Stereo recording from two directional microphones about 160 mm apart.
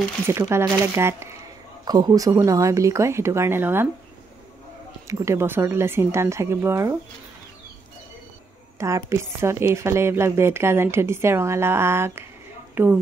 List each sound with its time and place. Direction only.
0.3 s a woman's voice: 15° right (ahead or behind)
5.0 s a woman's voice: 20° right (ahead or behind)
8.7 s a woman's voice: 20° right (ahead or behind)